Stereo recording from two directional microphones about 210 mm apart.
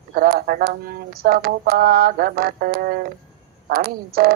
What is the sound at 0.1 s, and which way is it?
A woman's voice, 45° right (ahead or behind).